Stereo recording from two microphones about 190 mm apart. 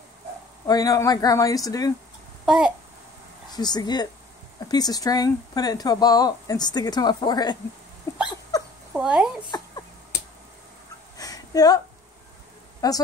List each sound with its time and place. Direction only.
0.7 s speech: 20° left (ahead or behind)
2.4 s a child's voice: 5° right (ahead or behind)
3.4 s speech: 20° left (ahead or behind)
8.3 s dog: 20° left (ahead or behind)
8.9 s speech: 5° right (ahead or behind)
11.1 s a sound: 20° left (ahead or behind)
12.8 s speech: 20° left (ahead or behind)